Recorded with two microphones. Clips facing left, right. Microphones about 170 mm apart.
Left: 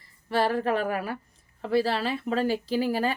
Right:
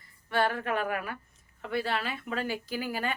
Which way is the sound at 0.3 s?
35° left (ahead or behind).